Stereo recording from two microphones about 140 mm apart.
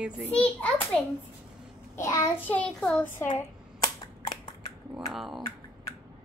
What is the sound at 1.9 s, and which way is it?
Child singing, 20° left (ahead or behind).